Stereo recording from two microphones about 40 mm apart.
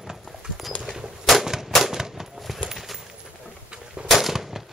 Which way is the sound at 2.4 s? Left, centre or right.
Centre.